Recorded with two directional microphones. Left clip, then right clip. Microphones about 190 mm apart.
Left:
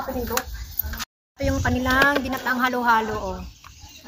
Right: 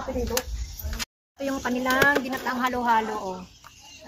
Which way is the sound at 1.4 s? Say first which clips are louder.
Left 3 dB; 10° left (ahead or behind).